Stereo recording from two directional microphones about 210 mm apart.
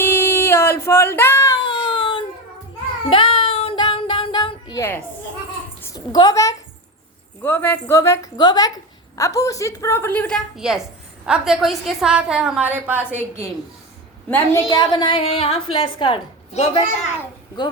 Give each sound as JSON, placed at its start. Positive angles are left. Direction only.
{"t": 0.0, "sound": "a sound", "side_deg": 10}
{"t": 3.1, "sound": "child singing", "side_deg": 25}
{"t": 5.8, "sound": "a woman's voice", "side_deg": 15}
{"t": 13.0, "sound": "a woman's voice", "side_deg": 10}